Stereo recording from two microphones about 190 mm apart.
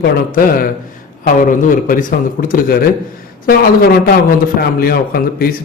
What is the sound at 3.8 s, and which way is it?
Speech, 50° left (ahead or behind).